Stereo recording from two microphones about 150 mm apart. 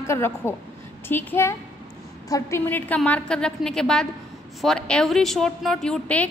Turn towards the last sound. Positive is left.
turn(degrees=5)  # may be behind; listen again after turning